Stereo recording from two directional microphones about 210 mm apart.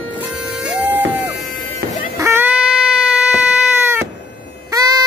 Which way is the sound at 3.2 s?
5° right (ahead or behind).